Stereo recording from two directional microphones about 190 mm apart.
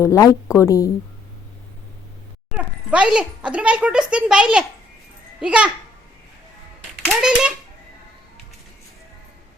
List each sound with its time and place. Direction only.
0.0 s a woman's voice: 15° left (ahead or behind)
2.9 s a child's voice: 5° right (ahead or behind)
7.0 s a child's voice: 5° right (ahead or behind)